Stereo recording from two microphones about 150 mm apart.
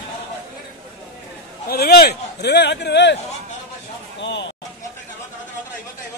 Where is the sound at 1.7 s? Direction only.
90° left.